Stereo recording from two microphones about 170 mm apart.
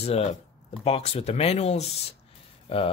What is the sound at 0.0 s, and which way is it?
Speech, 40° left (ahead or behind).